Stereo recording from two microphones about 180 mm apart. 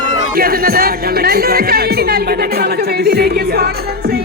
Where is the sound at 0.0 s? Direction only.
55° right (ahead or behind).